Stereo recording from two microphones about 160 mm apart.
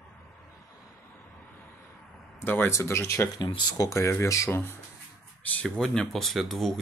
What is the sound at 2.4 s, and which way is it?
Speech, 15° left (ahead or behind).